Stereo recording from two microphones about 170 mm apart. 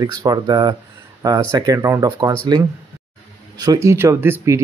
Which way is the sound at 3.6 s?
20° right (ahead or behind).